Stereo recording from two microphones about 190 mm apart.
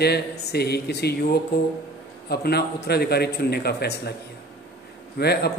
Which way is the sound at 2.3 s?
55° left (ahead or behind).